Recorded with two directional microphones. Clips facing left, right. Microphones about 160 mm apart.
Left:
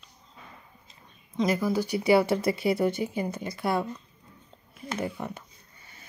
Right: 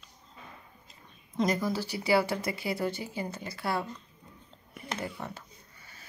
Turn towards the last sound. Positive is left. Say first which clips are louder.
# left 5 dB
turn(degrees=15)  # may be behind; listen again after turning